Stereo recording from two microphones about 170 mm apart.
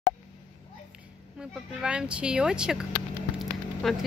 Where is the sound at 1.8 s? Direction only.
5° right (ahead or behind).